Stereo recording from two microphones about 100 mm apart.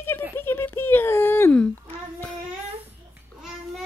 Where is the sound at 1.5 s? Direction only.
10° left (ahead or behind).